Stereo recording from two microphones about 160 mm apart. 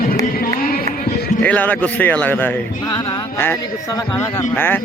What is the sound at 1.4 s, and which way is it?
A man's voice, 10° left (ahead or behind).